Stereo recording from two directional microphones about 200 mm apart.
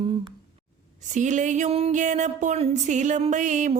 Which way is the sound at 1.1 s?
35° right (ahead or behind).